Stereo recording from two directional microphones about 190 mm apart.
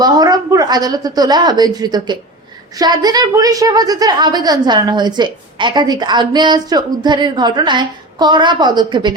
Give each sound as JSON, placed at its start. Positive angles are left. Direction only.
{"t": 0.0, "sound": "a woman's voice", "side_deg": -20}